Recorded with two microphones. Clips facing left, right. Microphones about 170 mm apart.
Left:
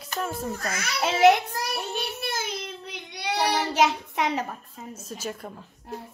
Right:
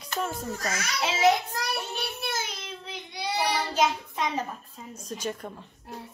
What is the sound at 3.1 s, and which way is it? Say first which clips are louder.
Child singing: left 2 dB; 70° left (ahead or behind).